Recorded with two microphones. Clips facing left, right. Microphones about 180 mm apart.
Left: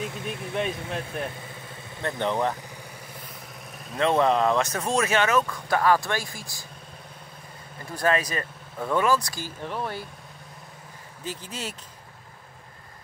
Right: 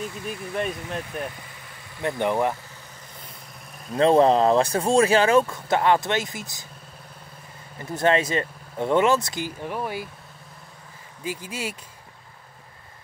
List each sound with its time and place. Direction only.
0.0 s speech: centre (ahead or behind)
2.0 s speech: 15° right (ahead or behind)
4.0 s speech: 30° right (ahead or behind)
7.9 s speech: 25° right (ahead or behind)
11.2 s speech: 10° right (ahead or behind)